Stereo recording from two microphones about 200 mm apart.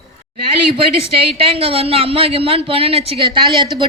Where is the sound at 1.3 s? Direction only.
30° right (ahead or behind).